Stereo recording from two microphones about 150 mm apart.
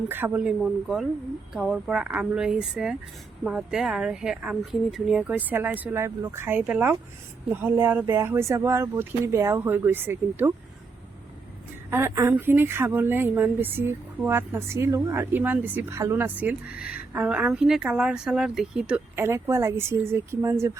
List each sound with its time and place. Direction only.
0.1 s a woman's voice: 10° right (ahead or behind)
11.9 s a woman's voice: 15° right (ahead or behind)